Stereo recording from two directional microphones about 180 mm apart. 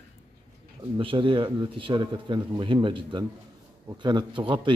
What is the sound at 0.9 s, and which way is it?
A man's voice, 30° right (ahead or behind).